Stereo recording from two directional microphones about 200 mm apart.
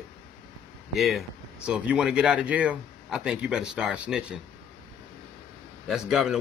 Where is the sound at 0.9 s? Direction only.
Centre (ahead or behind).